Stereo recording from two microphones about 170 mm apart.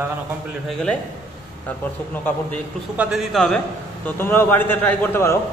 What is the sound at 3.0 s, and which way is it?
Speech, centre (ahead or behind).